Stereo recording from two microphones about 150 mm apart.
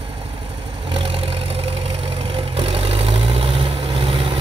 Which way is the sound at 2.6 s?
40° right (ahead or behind).